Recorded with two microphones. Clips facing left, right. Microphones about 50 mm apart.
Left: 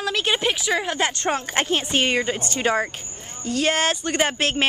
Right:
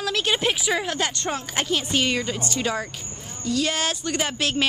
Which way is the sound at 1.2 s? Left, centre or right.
Left.